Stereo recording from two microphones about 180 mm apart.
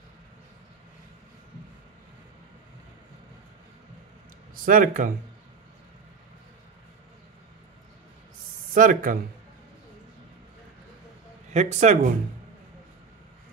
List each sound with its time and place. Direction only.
4.6 s speech: 50° right (ahead or behind)
8.7 s speech: 50° right (ahead or behind)
11.5 s speech: 40° right (ahead or behind)